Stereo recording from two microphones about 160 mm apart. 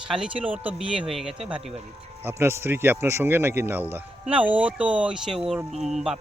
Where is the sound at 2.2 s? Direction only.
15° right (ahead or behind).